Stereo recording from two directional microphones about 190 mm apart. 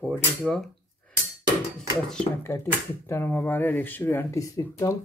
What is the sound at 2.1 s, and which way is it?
Speech, 10° left (ahead or behind).